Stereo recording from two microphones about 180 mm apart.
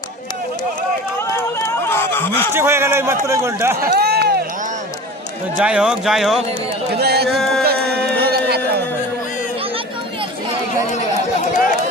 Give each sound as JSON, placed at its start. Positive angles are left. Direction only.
{"t": 1.5, "sound": "a sound", "side_deg": 15}
{"t": 2.5, "sound": "a man's voice", "side_deg": -15}
{"t": 3.9, "sound": "speech", "side_deg": -65}
{"t": 5.5, "sound": "speech", "side_deg": -5}
{"t": 7.0, "sound": "a sound", "side_deg": -65}
{"t": 7.3, "sound": "music", "side_deg": 0}
{"t": 7.6, "sound": "music", "side_deg": -60}